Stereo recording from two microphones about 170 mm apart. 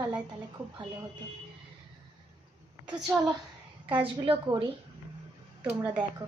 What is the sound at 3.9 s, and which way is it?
Speech, 30° right (ahead or behind).